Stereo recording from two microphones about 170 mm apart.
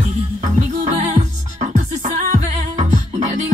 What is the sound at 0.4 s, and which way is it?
Music, 45° right (ahead or behind).